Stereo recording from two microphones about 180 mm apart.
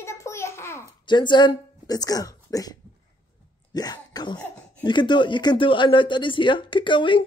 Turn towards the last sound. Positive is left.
turn(degrees=25)  # may be behind; listen again after turning